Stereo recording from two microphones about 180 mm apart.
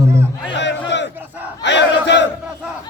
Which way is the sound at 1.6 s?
75° left (ahead or behind).